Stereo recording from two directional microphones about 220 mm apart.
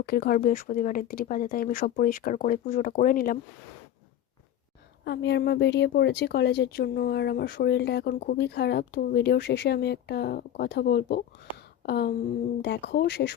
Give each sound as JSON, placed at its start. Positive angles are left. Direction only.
{"t": 0.0, "sound": "speech", "side_deg": 45}
{"t": 5.0, "sound": "speech", "side_deg": 50}
{"t": 11.5, "sound": "a sound", "side_deg": 45}
{"t": 12.6, "sound": "speech", "side_deg": 50}